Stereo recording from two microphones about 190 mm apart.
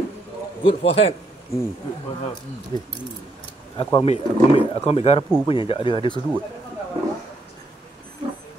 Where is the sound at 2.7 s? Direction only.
20° left (ahead or behind).